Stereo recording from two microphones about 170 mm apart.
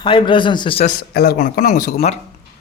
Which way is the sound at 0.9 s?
60° left (ahead or behind).